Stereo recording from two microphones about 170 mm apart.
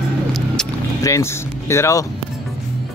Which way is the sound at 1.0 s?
15° left (ahead or behind).